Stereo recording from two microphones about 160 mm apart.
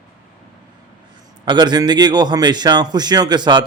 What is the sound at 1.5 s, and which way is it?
A man's voice, 25° right (ahead or behind).